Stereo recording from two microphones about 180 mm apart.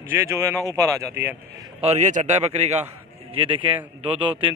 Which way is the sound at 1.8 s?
40° right (ahead or behind).